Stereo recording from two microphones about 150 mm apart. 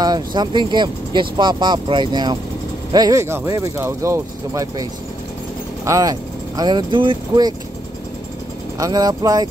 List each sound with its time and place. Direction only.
0.0 s speech: 30° right (ahead or behind)
5.9 s speech: 20° right (ahead or behind)
8.7 s speech: 25° right (ahead or behind)